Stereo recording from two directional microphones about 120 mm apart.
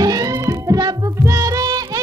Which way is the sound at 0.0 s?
30° right (ahead or behind).